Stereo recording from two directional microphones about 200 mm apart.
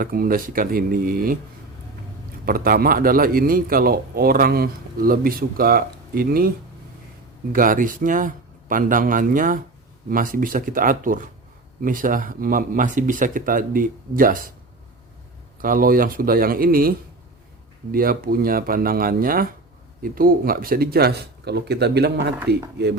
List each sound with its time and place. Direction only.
0.0 s a man's voice: 45° right (ahead or behind)
2.4 s a man's voice: 45° right (ahead or behind)
7.5 s a man's voice: 45° right (ahead or behind)
15.6 s a man's voice: 45° right (ahead or behind)
17.9 s a man's voice: 45° right (ahead or behind)